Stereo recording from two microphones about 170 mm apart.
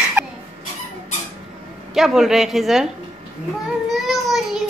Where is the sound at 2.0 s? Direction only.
Centre (ahead or behind).